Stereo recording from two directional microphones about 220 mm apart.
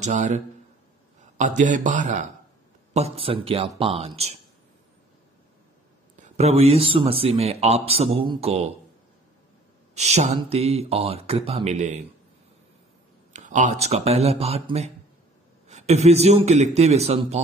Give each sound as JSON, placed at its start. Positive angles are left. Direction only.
{"t": 0.0, "sound": "speech", "side_deg": -30}
{"t": 1.4, "sound": "speech", "side_deg": -35}
{"t": 6.1, "sound": "speech", "side_deg": -30}
{"t": 9.9, "sound": "speech", "side_deg": -30}
{"t": 13.3, "sound": "speech", "side_deg": -35}